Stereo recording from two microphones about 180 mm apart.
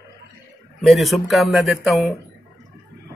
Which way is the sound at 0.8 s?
Centre (ahead or behind).